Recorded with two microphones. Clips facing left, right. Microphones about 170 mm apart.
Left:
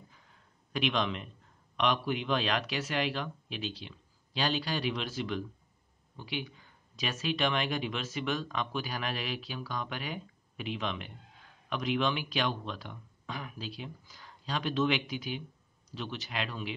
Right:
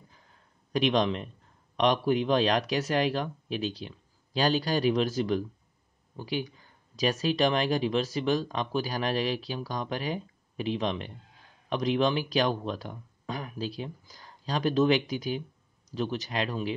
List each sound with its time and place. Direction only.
0.7 s speech: 40° right (ahead or behind)